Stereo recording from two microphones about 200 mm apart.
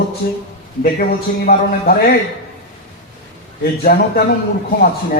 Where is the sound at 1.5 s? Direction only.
50° left (ahead or behind).